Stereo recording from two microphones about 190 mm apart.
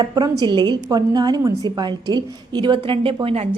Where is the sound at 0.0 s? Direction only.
20° right (ahead or behind).